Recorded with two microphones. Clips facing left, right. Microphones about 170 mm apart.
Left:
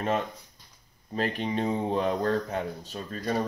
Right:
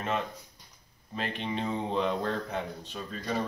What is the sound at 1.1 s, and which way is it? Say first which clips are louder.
Speech: left 5 dB; 40° left (ahead or behind).